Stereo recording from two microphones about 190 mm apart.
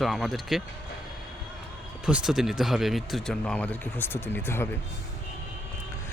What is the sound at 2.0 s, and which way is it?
Speech, 5° right (ahead or behind).